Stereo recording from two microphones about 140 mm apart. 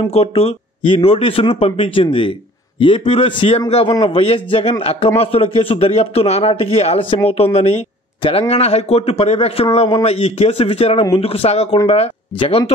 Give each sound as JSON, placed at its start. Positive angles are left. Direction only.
{"t": 0.1, "sound": "a man's voice", "side_deg": 45}